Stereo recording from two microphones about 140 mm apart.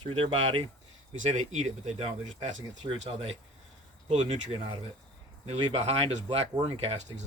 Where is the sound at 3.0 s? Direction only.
45° right (ahead or behind).